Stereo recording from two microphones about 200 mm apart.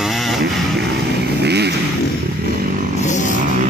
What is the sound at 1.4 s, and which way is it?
Vehicle, 55° right (ahead or behind).